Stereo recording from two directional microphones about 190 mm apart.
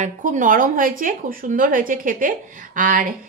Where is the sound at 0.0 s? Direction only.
40° right (ahead or behind).